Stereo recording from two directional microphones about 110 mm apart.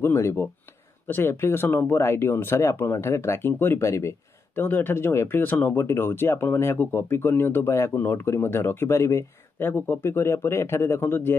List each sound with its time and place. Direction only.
0.0 s speech: 25° left (ahead or behind)